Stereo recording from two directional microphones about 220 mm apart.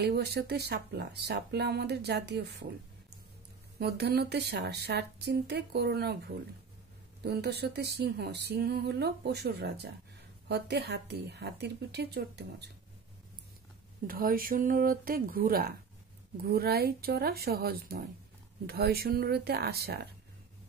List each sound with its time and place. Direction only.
0.0 s speech: 45° right (ahead or behind)
3.8 s speech: 45° right (ahead or behind)
14.0 s speech: 40° right (ahead or behind)